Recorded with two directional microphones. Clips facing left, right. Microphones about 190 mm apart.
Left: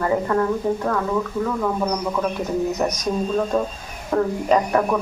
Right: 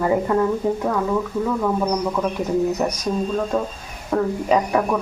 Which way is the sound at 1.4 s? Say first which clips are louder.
Right 2 dB; 5° right (ahead or behind).